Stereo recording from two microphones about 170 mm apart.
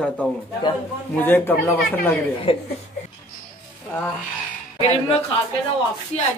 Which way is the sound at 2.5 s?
30° left (ahead or behind).